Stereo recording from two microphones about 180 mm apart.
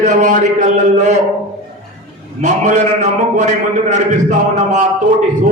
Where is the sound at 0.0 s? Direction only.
45° right (ahead or behind).